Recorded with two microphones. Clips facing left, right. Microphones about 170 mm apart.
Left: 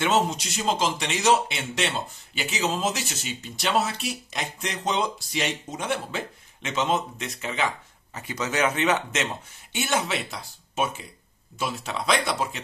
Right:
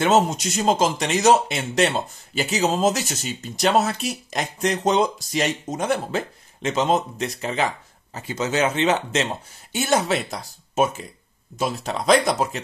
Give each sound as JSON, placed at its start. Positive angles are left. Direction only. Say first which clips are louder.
{"t": 0.0, "sound": "speech", "louder": "right 5 dB", "side_deg": -45}